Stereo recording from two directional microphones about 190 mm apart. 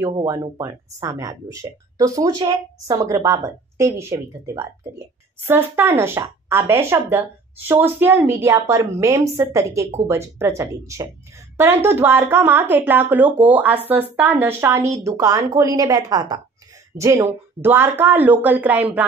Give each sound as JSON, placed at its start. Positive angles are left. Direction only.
{"t": 0.0, "sound": "speech", "side_deg": -15}